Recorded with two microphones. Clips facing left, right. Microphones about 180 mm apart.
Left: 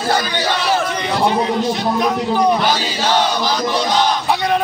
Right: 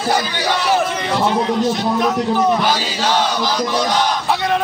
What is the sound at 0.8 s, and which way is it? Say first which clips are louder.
A man's voice: left 1 dB; 5° right (ahead or behind).